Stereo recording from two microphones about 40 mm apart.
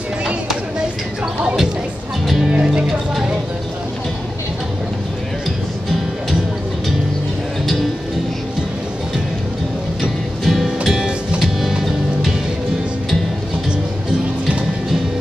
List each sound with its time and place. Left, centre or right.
2.2 s music: centre
2.5 s music: right
7.6 s music: centre
10.4 s music: centre